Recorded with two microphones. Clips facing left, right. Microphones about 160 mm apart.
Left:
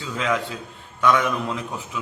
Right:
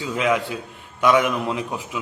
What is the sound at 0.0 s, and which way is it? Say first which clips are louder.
A man's voice: right 3 dB; 15° right (ahead or behind).